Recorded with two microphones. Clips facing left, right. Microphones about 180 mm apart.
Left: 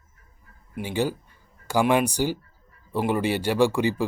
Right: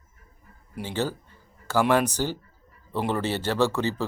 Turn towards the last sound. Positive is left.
turn(degrees=10)  # may be behind; listen again after turning